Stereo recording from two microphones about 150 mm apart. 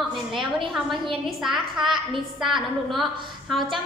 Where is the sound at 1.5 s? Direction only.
30° right (ahead or behind).